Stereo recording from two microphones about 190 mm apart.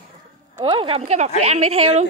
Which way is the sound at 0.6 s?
30° right (ahead or behind).